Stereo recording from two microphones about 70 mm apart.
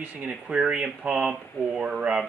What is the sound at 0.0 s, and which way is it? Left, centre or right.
A man's voice, centre.